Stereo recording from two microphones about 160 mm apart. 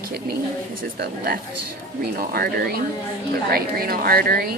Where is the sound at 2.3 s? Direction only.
70° right (ahead or behind).